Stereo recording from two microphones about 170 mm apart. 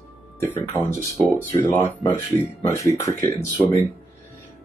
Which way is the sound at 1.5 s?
15° left (ahead or behind).